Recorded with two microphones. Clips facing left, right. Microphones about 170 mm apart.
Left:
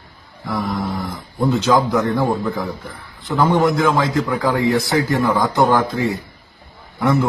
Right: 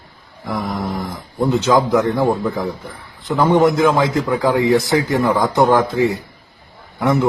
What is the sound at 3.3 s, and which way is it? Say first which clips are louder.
A man's voice: right 2 dB; 20° right (ahead or behind).